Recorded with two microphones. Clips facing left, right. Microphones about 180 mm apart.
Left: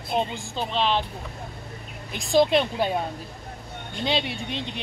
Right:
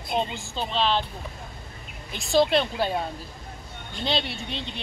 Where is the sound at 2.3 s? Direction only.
15° left (ahead or behind).